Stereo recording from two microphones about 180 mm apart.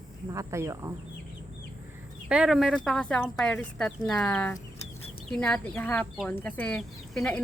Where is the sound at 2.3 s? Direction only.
5° right (ahead or behind).